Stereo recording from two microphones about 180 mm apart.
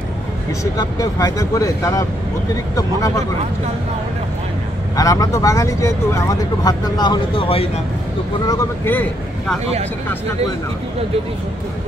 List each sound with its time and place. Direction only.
0.7 s speech: 20° left (ahead or behind)
4.9 s speech: 20° left (ahead or behind)
8.5 s speech: 15° left (ahead or behind)